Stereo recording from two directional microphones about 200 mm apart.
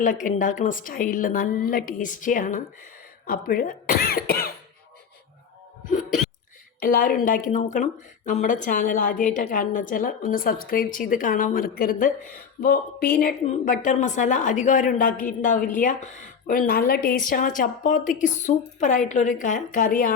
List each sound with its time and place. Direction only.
0.0 s speech: 40° left (ahead or behind)
5.9 s music: 40° left (ahead or behind)
6.8 s speech: 45° left (ahead or behind)
13.4 s a woman's voice: 35° left (ahead or behind)